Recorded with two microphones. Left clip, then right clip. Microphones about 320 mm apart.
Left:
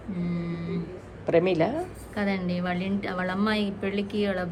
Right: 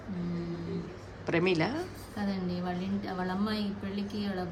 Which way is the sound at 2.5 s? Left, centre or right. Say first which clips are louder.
Left 6 dB; right.